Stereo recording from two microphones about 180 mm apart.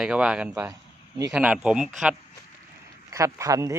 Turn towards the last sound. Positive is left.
turn(degrees=-20)  # may be behind; listen again after turning